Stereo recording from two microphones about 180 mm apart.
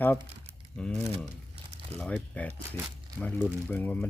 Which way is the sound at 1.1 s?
35° right (ahead or behind).